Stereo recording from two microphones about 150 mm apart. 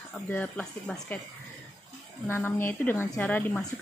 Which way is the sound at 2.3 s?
15° left (ahead or behind).